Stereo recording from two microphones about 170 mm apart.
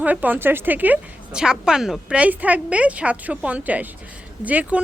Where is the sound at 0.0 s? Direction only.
10° right (ahead or behind).